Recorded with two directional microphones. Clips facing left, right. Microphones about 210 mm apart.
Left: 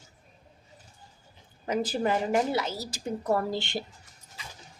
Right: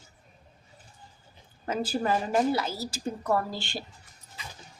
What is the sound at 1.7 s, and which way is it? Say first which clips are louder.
A woman's voice: left 1 dB; 20° left (ahead or behind).